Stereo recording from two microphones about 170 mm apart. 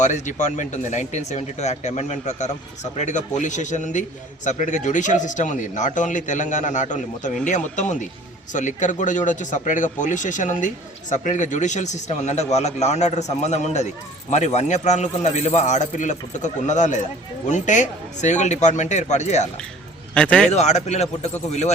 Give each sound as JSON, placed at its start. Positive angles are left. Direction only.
{"t": 0.0, "sound": "a man's voice", "side_deg": 45}
{"t": 20.1, "sound": "a man's voice", "side_deg": 5}
{"t": 20.5, "sound": "a man's voice", "side_deg": 40}